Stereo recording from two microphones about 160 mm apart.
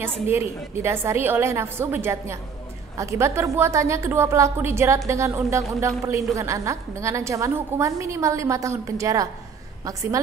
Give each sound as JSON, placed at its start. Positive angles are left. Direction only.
{"t": 0.0, "sound": "a woman's voice", "side_deg": -15}